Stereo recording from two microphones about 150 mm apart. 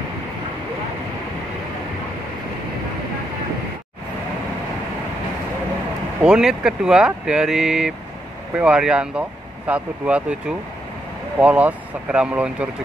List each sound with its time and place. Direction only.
6.2 s speech: 5° right (ahead or behind)